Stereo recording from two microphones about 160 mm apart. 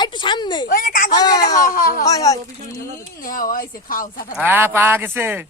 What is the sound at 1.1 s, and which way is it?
Speech, 25° left (ahead or behind).